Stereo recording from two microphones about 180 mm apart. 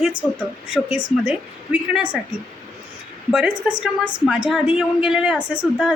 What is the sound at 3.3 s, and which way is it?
A woman's voice, 5° right (ahead or behind).